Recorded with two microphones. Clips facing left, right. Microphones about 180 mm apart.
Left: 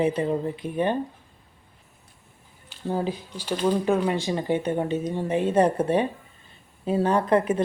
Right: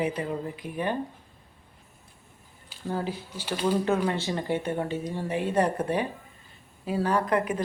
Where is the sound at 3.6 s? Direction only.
15° left (ahead or behind).